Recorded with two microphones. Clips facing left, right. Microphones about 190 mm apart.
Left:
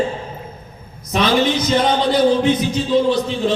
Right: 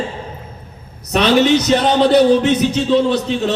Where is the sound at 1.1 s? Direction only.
70° right (ahead or behind).